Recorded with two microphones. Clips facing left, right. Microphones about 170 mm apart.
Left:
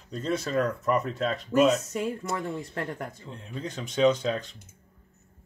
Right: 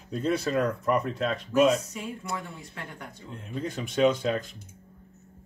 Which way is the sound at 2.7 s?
45° left (ahead or behind).